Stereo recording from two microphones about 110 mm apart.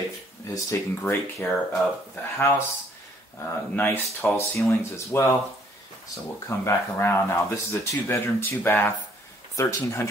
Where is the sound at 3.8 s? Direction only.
25° left (ahead or behind).